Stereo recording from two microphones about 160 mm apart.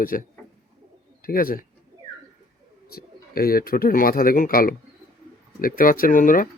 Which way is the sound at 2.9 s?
65° left (ahead or behind).